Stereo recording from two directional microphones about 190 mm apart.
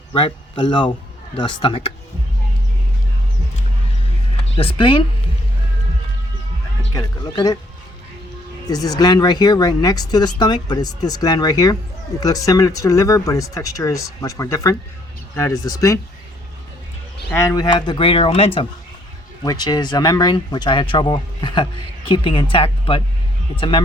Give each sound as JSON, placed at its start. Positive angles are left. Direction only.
{"t": 0.1, "sound": "a man's voice", "side_deg": 25}
{"t": 4.5, "sound": "speech", "side_deg": 30}
{"t": 6.9, "sound": "speech", "side_deg": 20}
{"t": 8.6, "sound": "speech", "side_deg": 20}
{"t": 17.3, "sound": "speech", "side_deg": 15}